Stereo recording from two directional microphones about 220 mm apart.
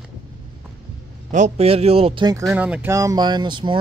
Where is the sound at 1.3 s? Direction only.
30° right (ahead or behind).